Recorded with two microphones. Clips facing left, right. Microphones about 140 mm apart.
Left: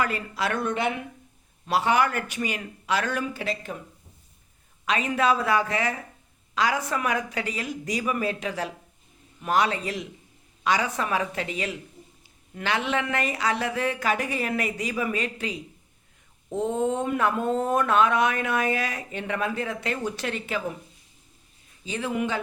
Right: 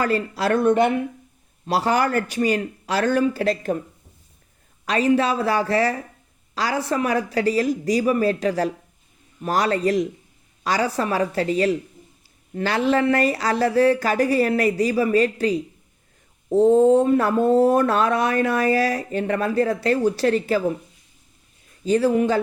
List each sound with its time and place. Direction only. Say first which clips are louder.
0.0 s speech: right 6 dB; 35° right (ahead or behind)
1.6 s speech: right 2 dB; 35° right (ahead or behind)
4.9 s speech: right 4 dB; 35° right (ahead or behind)
21.8 s speech: right 10 dB; 40° right (ahead or behind)